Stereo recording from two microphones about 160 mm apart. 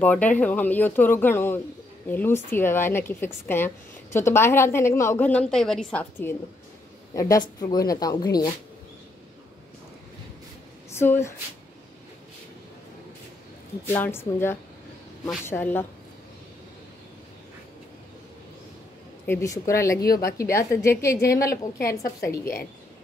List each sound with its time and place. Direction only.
0.0 s speech: 10° left (ahead or behind)
7.2 s speech: 25° left (ahead or behind)
10.9 s speech: 15° left (ahead or behind)
13.8 s speech: 15° left (ahead or behind)
19.2 s speech: 15° left (ahead or behind)
21.5 s a woman's voice: 70° left (ahead or behind)